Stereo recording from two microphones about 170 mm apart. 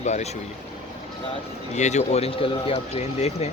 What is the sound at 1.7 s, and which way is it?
Speech, 45° left (ahead or behind).